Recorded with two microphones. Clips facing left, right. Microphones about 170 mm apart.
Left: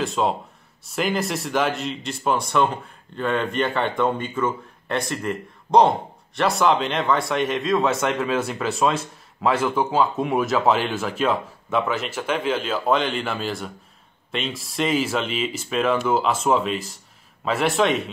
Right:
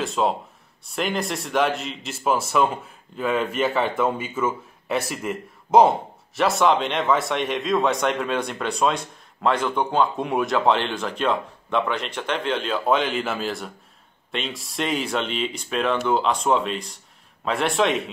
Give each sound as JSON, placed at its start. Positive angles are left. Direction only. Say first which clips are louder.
{"t": 0.0, "sound": "a man's voice", "louder": "even", "side_deg": 0}